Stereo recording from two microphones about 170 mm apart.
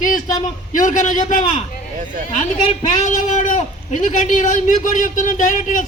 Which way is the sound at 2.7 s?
45° left (ahead or behind).